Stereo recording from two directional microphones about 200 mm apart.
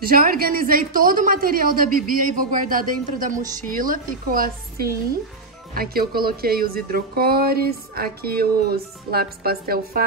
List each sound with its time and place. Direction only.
0.0 s a woman's voice: 45° right (ahead or behind)